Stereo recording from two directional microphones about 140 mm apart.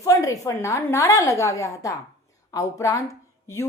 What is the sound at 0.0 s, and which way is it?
A woman's voice, 25° left (ahead or behind).